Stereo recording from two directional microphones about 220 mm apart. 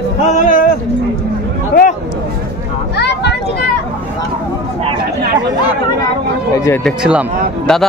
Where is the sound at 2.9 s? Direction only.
50° left (ahead or behind).